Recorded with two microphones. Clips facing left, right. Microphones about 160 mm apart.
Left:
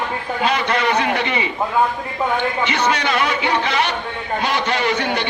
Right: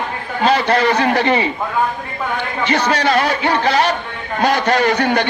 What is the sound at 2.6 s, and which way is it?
A man's voice, 35° right (ahead or behind).